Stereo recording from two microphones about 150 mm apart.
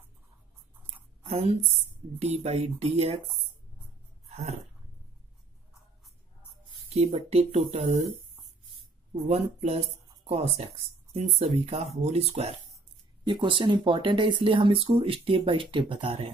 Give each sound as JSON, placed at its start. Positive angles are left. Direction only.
{"t": 1.2, "sound": "a woman's voice", "side_deg": -50}
{"t": 6.9, "sound": "speech", "side_deg": -45}
{"t": 9.3, "sound": "speech", "side_deg": -45}
{"t": 13.2, "sound": "speech", "side_deg": -30}